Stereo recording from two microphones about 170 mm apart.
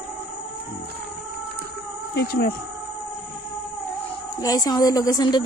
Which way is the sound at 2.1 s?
70° left (ahead or behind).